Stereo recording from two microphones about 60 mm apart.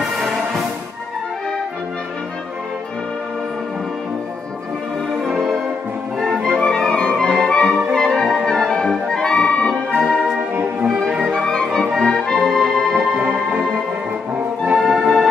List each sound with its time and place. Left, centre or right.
6.1 s music: centre
6.6 s music: centre
7.9 s brass instrument: centre
8.5 s music: centre
9.9 s music: centre
10.5 s music: right
11.3 s music: centre
14.8 s music: centre